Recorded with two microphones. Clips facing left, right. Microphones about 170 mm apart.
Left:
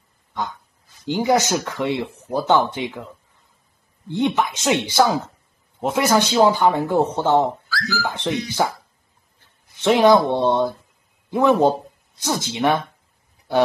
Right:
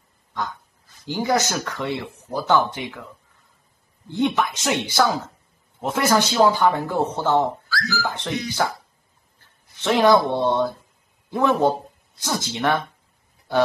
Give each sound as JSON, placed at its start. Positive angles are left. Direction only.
{"t": 1.0, "sound": "speech", "side_deg": 20}
{"t": 4.1, "sound": "speech", "side_deg": 20}
{"t": 9.8, "sound": "a man's voice", "side_deg": 15}